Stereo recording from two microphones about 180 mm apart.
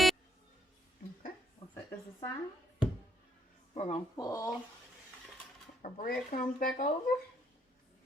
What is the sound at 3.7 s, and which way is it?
Speech, 30° left (ahead or behind).